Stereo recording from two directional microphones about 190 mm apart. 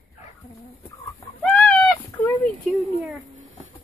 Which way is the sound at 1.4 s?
5° left (ahead or behind).